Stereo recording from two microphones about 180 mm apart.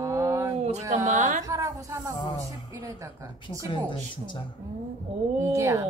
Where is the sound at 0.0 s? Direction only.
15° right (ahead or behind).